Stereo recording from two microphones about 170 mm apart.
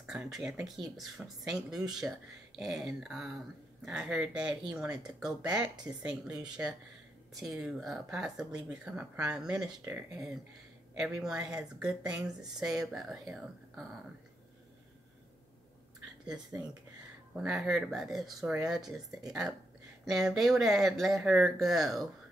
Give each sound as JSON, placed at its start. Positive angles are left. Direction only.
{"t": 0.0, "sound": "speech", "side_deg": -5}
{"t": 12.0, "sound": "speech", "side_deg": -20}
{"t": 12.4, "sound": "speech", "side_deg": -5}
{"t": 17.4, "sound": "speech", "side_deg": 0}
{"t": 20.1, "sound": "speech", "side_deg": 0}